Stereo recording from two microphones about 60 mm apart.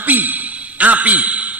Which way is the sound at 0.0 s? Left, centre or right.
Right.